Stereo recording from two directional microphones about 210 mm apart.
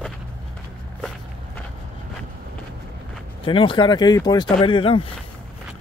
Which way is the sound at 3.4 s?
25° left (ahead or behind).